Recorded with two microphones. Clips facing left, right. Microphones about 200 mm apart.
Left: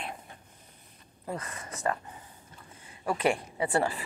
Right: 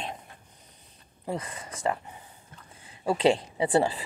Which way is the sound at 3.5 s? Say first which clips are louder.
Right 4 dB; 20° right (ahead or behind).